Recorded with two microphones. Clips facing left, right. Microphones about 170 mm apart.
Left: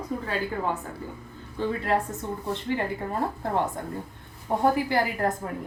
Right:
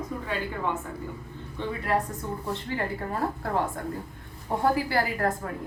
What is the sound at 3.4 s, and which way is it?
A woman's voice, 20° left (ahead or behind).